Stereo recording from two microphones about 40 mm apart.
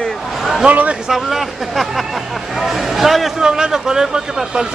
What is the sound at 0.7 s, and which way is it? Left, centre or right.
Speech, right.